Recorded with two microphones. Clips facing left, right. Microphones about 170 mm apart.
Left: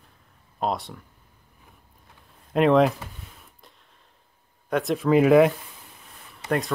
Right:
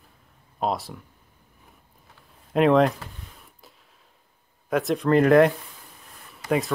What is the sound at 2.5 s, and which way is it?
Speech, centre (ahead or behind).